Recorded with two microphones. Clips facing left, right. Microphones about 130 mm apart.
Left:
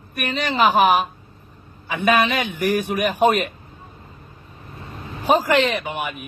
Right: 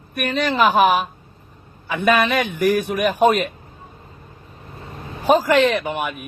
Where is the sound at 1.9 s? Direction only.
50° right (ahead or behind).